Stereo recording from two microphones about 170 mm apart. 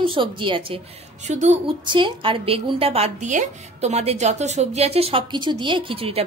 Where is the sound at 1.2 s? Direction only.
40° right (ahead or behind).